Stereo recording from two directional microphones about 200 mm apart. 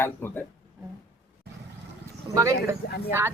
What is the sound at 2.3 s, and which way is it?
Speech, 15° right (ahead or behind).